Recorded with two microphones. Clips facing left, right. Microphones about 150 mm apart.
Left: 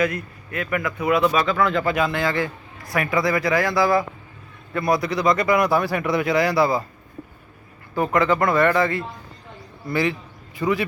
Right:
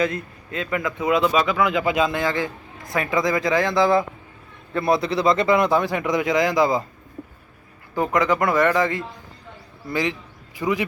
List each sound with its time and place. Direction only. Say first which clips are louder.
0.0 s a man's voice: even; 25° right (ahead or behind)
7.9 s a man's voice: left 1 dB; 15° right (ahead or behind)